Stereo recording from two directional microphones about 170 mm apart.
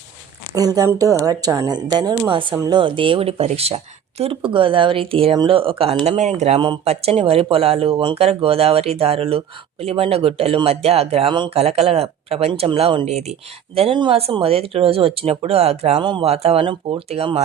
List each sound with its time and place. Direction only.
0.5 s a woman's voice: 20° right (ahead or behind); by 17.4 s 35° right (ahead or behind)